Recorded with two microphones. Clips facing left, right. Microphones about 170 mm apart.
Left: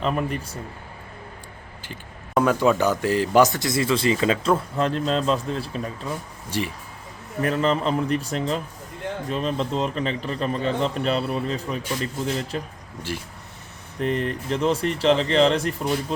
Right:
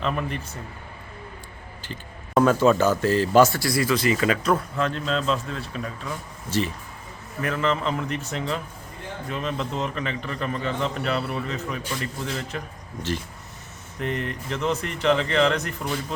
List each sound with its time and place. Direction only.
0.0 s speech: 5° left (ahead or behind)
2.4 s a man's voice: 15° left (ahead or behind); by 6.1 s 35° left (ahead or behind)
6.5 s speech: 15° left (ahead or behind)
7.4 s a man's voice: 35° left (ahead or behind)
14.0 s a man's voice: 35° left (ahead or behind)